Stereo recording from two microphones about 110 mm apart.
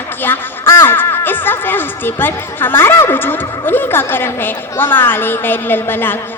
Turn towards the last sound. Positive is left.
turn(degrees=20)  # may be behind; listen again after turning